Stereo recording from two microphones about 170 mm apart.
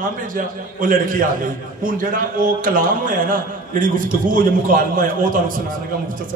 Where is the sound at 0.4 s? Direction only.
55° right (ahead or behind).